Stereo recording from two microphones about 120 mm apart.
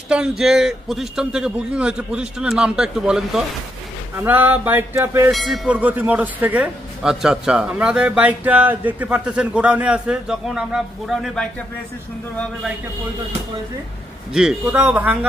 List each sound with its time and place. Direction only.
0.1 s a man's voice: 5° right (ahead or behind); by 5.3 s 20° right (ahead or behind)
5.3 s a man's voice: centre (ahead or behind)
5.7 s a man's voice: 15° right (ahead or behind)
14.3 s a man's voice: 10° right (ahead or behind)